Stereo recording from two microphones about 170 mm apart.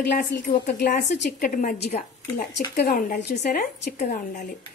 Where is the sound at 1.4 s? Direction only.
55° left (ahead or behind).